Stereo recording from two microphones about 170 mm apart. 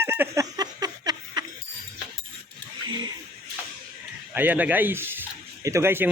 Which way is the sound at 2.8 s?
25° right (ahead or behind).